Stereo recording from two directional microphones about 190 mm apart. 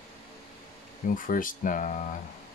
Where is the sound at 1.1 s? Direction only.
45° left (ahead or behind).